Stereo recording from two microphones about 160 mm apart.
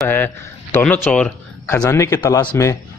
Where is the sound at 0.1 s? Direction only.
15° left (ahead or behind).